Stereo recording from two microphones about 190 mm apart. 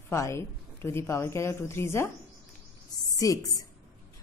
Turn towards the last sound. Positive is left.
turn(degrees=20)  # may be behind; listen again after turning